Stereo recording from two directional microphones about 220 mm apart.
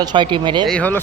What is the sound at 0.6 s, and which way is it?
Speech, 5° left (ahead or behind).